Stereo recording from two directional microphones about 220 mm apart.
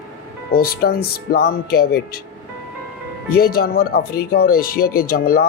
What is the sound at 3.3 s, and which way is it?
Speech, 45° left (ahead or behind).